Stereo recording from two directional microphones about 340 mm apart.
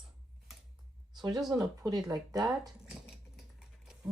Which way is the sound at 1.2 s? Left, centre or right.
Centre.